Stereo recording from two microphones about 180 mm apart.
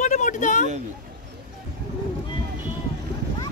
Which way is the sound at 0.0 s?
45° left (ahead or behind).